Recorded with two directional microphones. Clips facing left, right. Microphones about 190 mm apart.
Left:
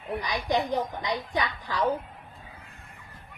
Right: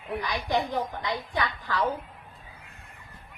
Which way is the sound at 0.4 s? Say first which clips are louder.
Left 2 dB; 20° left (ahead or behind).